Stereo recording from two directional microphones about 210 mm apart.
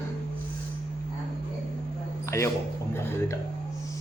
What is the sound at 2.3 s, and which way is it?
Speech, 10° left (ahead or behind).